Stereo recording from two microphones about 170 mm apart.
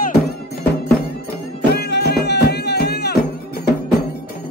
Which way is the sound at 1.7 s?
70° left (ahead or behind).